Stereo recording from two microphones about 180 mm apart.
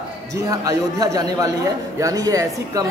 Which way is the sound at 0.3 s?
20° right (ahead or behind).